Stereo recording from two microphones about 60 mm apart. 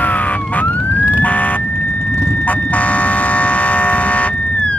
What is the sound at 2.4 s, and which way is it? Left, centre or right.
Vehicle, left.